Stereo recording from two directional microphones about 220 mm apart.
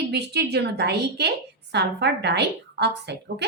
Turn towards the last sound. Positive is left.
turn(degrees=-50)  # may be behind; listen again after turning